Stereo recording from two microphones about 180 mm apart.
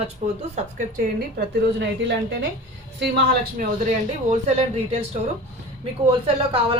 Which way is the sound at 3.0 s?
65° right (ahead or behind).